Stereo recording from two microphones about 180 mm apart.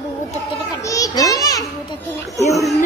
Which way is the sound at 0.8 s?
20° left (ahead or behind).